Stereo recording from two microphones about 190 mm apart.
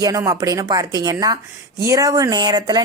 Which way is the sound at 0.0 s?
20° right (ahead or behind).